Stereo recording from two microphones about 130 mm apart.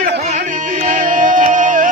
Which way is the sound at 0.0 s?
85° right.